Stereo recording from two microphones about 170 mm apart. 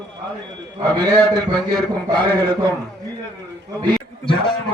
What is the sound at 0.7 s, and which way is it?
A man's voice, 25° right (ahead or behind).